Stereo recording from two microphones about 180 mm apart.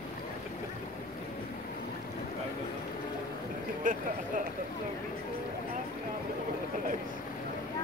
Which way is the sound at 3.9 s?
45° right (ahead or behind).